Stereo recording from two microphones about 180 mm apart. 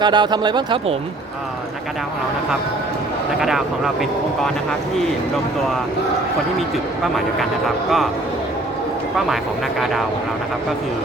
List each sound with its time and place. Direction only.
0.0 s speech: 25° right (ahead or behind)
3.4 s speech: centre (ahead or behind)